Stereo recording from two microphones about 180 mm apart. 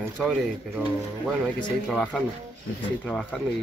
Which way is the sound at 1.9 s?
Centre (ahead or behind).